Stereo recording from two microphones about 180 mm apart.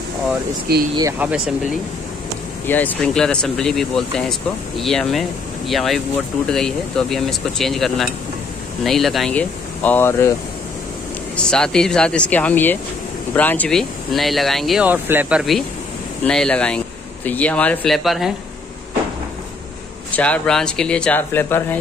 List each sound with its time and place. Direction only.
0.7 s speech: 60° right (ahead or behind)
1.2 s speech: 5° right (ahead or behind)
2.6 s speech: 10° left (ahead or behind)
11.3 s speech: 5° left (ahead or behind)
20.1 s speech: 10° left (ahead or behind)